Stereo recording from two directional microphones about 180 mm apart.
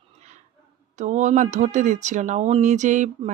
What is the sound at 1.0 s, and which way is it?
Speech, 40° right (ahead or behind).